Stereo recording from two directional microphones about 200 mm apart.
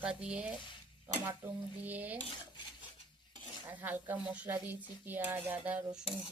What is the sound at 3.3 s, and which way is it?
Speech, 10° right (ahead or behind).